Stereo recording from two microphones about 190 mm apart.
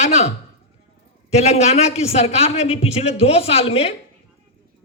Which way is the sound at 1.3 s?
35° left (ahead or behind).